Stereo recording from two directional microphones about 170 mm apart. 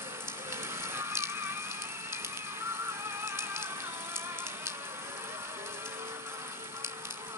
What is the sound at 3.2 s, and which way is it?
Music, 15° right (ahead or behind).